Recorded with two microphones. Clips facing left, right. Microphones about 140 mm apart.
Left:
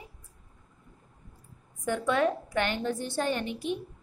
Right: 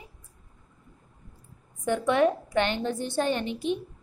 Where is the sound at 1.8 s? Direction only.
25° right (ahead or behind).